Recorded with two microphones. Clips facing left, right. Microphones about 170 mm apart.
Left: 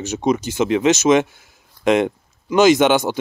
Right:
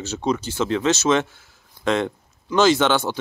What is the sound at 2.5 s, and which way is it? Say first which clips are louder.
Speech: left 4 dB; 15° left (ahead or behind).